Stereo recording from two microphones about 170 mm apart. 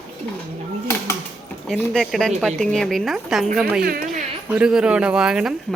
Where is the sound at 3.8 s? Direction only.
60° right (ahead or behind).